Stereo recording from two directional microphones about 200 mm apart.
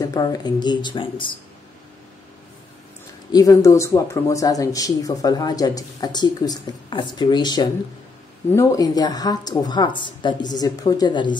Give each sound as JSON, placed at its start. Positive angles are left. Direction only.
{"t": 0.0, "sound": "speech", "side_deg": 20}
{"t": 3.3, "sound": "speech", "side_deg": 20}